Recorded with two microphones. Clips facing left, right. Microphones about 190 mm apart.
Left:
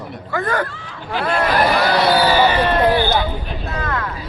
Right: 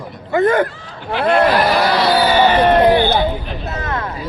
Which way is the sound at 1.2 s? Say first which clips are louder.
Right 4 dB; 35° right (ahead or behind).